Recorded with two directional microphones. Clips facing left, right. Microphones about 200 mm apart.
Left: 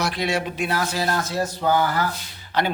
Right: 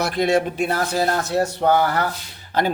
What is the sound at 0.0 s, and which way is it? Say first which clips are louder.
Speech: right 5 dB; 50° right (ahead or behind).